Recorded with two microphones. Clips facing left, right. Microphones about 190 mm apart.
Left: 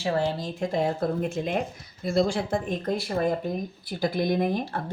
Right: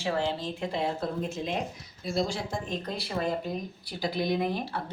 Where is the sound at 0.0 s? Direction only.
40° left (ahead or behind).